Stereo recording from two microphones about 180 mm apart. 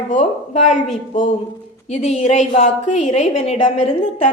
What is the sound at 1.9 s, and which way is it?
A woman's voice, 40° left (ahead or behind).